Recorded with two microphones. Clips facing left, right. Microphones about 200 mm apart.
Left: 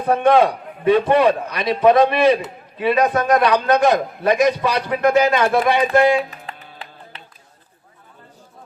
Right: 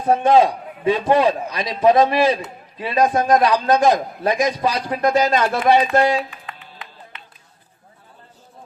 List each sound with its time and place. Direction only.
0.0 s a man's voice: 60° left (ahead or behind)
6.4 s music: 30° left (ahead or behind)